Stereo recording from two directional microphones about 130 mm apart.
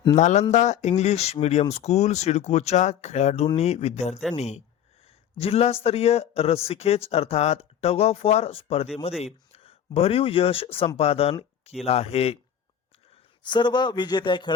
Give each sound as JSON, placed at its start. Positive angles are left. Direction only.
{"t": 0.2, "sound": "speech", "side_deg": 65}
{"t": 13.4, "sound": "a man's voice", "side_deg": 35}